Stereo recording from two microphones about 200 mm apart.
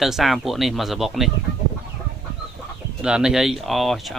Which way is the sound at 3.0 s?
5° right (ahead or behind).